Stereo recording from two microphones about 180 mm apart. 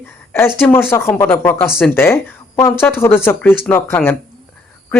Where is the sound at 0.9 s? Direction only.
15° left (ahead or behind).